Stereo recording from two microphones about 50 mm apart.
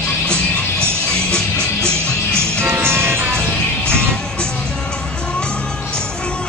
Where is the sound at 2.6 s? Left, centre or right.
Right.